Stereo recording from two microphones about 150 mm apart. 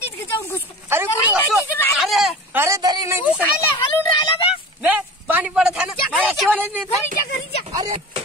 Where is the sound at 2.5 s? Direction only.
20° right (ahead or behind).